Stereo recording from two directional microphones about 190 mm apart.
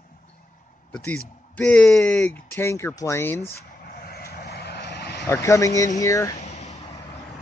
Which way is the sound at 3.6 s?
55° left (ahead or behind).